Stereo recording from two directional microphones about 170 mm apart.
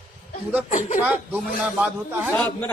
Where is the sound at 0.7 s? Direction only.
45° left (ahead or behind).